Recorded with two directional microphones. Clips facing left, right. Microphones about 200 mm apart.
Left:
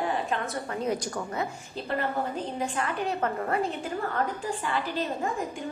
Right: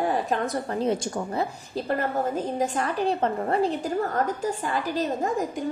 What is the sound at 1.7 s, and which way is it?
A woman's voice, 45° right (ahead or behind).